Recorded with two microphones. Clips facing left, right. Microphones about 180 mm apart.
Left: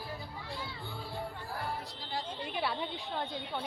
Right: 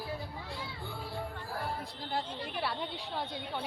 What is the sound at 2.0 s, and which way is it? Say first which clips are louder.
Speech: right 3 dB; 55° right (ahead or behind).